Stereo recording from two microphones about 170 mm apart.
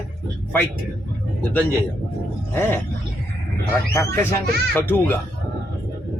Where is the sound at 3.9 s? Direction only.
15° left (ahead or behind).